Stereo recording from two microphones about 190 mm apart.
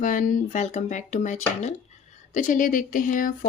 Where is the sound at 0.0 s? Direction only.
45° left (ahead or behind).